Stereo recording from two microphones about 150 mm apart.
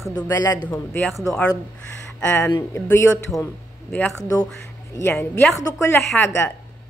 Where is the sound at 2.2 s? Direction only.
15° left (ahead or behind).